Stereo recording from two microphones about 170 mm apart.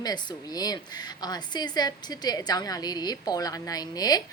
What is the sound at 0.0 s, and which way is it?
A woman's voice, 20° left (ahead or behind).